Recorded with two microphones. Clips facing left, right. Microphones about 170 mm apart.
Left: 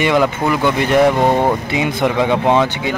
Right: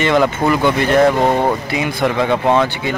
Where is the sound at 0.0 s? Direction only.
10° left (ahead or behind).